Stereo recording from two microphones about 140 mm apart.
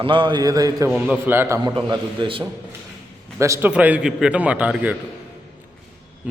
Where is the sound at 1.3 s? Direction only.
15° right (ahead or behind).